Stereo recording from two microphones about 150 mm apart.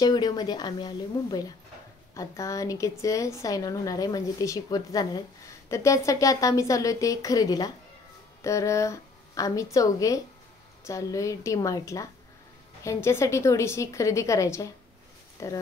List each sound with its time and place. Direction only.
0.0 s a woman's voice: 25° left (ahead or behind)